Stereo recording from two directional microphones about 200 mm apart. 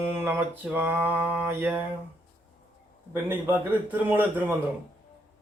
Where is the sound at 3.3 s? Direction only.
10° right (ahead or behind).